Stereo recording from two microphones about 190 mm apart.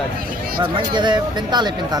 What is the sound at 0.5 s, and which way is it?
Speech, 25° right (ahead or behind).